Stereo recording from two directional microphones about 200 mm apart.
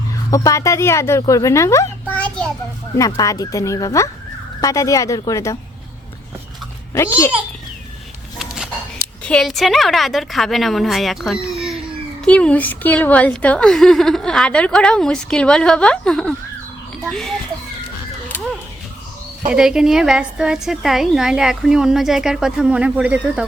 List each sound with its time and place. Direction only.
0.3 s speech: 15° left (ahead or behind)
3.0 s speech: 15° left (ahead or behind)
8.4 s a sound: 5° right (ahead or behind)
9.2 s a woman's voice: 5° left (ahead or behind)
19.5 s a woman's voice: 5° right (ahead or behind)